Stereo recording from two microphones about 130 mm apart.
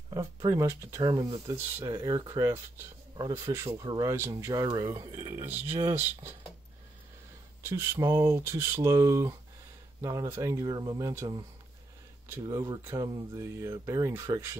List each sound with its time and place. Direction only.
0.1 s speech: 25° right (ahead or behind)
7.6 s speech: 20° right (ahead or behind)